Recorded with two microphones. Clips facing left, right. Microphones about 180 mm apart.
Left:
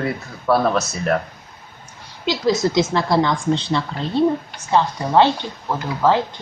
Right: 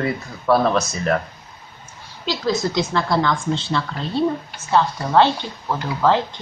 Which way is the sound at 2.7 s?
25° left (ahead or behind).